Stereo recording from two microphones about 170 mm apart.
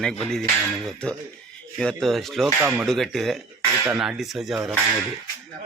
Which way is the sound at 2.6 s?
10° right (ahead or behind).